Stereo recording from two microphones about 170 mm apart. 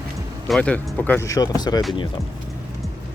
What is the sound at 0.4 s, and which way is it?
Speech, 5° left (ahead or behind).